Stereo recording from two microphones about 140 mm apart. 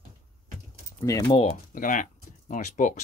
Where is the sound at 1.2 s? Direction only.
35° left (ahead or behind).